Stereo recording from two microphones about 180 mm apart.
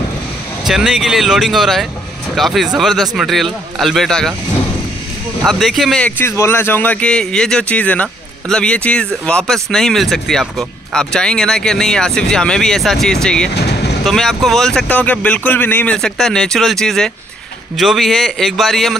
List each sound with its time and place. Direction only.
0.7 s speech: centre (ahead or behind)
5.4 s speech: centre (ahead or behind)
13.6 s vehicle: 65° left (ahead or behind)
14.0 s speech: centre (ahead or behind)